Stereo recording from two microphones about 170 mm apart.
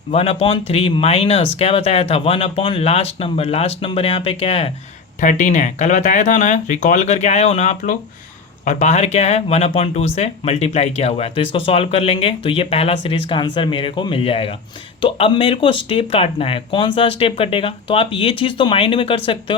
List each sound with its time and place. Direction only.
0.1 s speech: 35° left (ahead or behind)
5.2 s speech: 45° left (ahead or behind); by 19.5 s 30° left (ahead or behind)